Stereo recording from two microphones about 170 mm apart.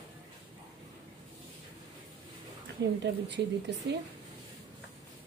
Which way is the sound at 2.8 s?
90° right.